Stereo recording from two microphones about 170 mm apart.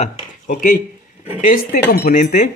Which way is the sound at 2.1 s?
45° left (ahead or behind).